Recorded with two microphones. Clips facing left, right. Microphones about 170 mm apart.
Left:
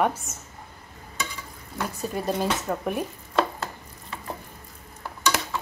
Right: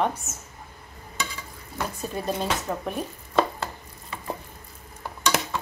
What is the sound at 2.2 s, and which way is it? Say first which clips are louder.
Speech: left 1 dB; 10° left (ahead or behind).